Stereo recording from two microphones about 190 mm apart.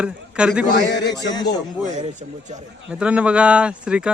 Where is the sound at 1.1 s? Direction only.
20° left (ahead or behind).